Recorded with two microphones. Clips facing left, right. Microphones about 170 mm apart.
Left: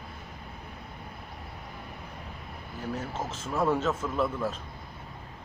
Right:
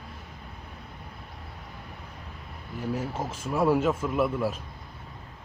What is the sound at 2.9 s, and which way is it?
A man's voice, 10° right (ahead or behind).